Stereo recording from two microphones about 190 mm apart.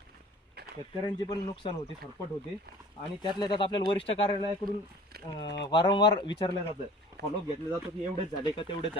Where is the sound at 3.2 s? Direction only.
25° left (ahead or behind).